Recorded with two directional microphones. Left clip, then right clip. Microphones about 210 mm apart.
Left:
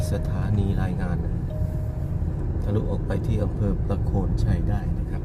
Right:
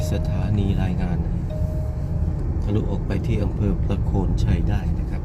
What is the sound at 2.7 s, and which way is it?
Speech, centre (ahead or behind).